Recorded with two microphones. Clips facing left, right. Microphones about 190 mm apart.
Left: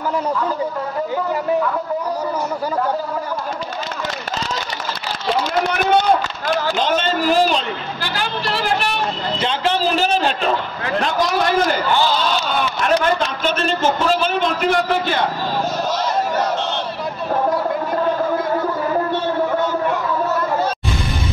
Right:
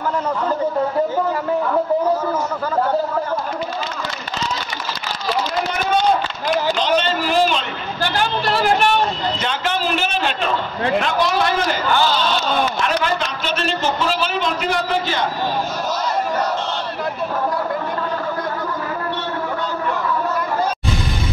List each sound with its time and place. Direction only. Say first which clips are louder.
6.8 s a man's voice: even; 45° left (ahead or behind)
8.0 s a woman's voice: right 6 dB; 45° right (ahead or behind)
9.4 s a man's voice: left 3 dB; 35° left (ahead or behind)
13.0 s speech: left 3 dB; 50° left (ahead or behind)